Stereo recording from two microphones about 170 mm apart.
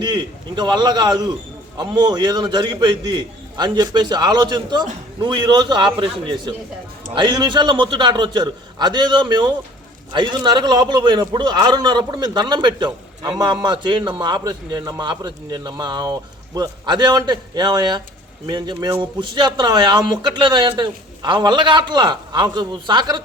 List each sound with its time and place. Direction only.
0.0 s a man's voice: 25° right (ahead or behind)